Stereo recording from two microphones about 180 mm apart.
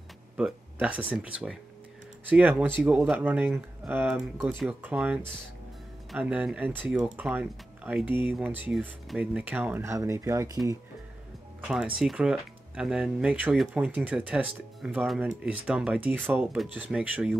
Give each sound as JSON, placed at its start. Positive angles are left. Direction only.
{"t": 0.4, "sound": "speech", "side_deg": -5}
{"t": 11.6, "sound": "speech", "side_deg": -5}